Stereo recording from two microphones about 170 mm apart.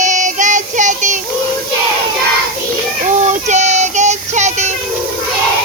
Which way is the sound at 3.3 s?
45° right (ahead or behind).